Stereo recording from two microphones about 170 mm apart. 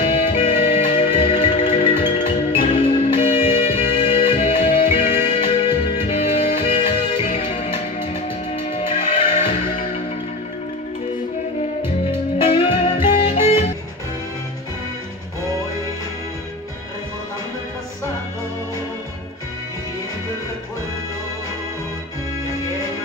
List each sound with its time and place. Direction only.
0.0 s music: 35° left (ahead or behind)
12.4 s music: 35° left (ahead or behind)